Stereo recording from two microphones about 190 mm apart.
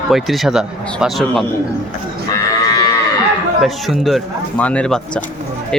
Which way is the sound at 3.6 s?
Centre (ahead or behind).